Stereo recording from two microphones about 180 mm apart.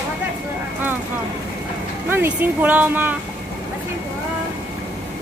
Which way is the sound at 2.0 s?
10° right (ahead or behind).